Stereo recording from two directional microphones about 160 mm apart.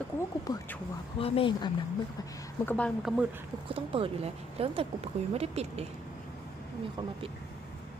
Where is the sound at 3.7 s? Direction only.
35° right (ahead or behind).